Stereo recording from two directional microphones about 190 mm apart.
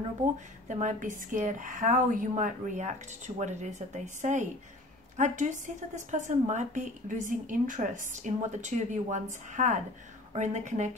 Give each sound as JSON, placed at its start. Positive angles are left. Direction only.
{"t": 0.7, "sound": "a woman's voice", "side_deg": -40}